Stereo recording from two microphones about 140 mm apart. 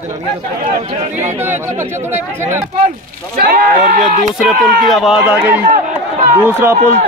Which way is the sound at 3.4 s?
90° right.